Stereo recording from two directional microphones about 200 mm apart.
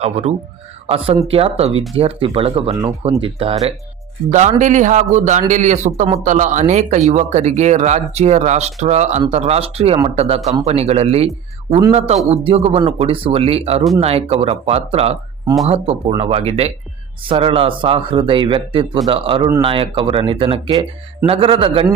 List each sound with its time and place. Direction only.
0.0 s speech: 30° right (ahead or behind)
12.3 s speech: 30° right (ahead or behind)